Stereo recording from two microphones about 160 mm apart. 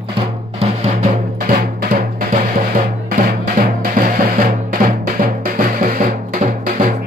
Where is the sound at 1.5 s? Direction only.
65° right (ahead or behind).